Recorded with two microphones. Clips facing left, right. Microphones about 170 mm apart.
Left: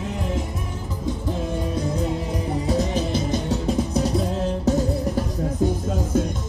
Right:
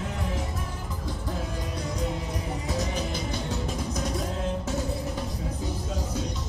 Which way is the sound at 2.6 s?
30° left (ahead or behind).